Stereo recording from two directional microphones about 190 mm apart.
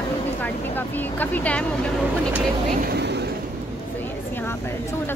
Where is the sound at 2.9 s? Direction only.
60° right (ahead or behind).